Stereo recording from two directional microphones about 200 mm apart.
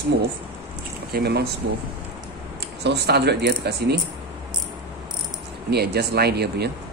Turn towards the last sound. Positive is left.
turn(degrees=-55)  # may be behind; listen again after turning